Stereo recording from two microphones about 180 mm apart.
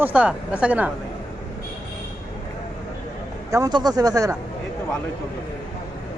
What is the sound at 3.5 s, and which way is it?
Speech, 20° right (ahead or behind).